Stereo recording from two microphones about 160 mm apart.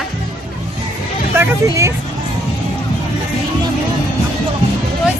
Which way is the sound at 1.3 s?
15° right (ahead or behind).